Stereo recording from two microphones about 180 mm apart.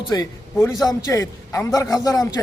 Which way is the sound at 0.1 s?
20° left (ahead or behind).